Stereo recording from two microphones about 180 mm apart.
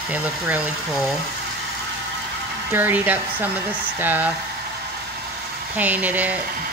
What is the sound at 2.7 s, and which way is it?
Speech, 10° right (ahead or behind).